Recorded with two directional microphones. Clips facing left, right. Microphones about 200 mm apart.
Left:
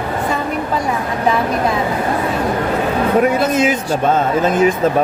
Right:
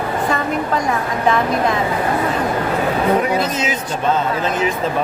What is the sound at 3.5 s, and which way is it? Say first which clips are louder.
Speech: left 6 dB; 50° left (ahead or behind).